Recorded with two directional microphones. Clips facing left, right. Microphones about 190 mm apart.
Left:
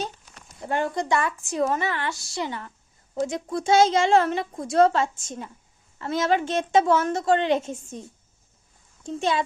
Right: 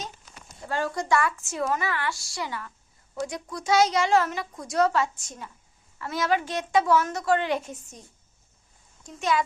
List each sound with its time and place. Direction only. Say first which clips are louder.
0.6 s a woman's voice: left 3 dB; 20° left (ahead or behind)
9.0 s a woman's voice: left 2 dB; 30° left (ahead or behind)